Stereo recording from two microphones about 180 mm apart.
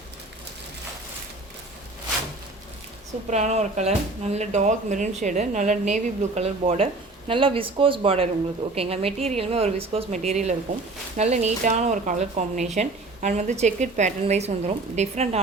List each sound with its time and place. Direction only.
3.2 s speech: 40° right (ahead or behind)